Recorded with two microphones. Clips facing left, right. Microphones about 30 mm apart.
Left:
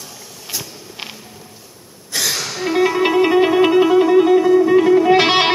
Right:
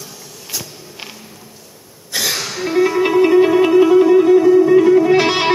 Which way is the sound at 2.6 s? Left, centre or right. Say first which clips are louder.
Right 1 dB; centre.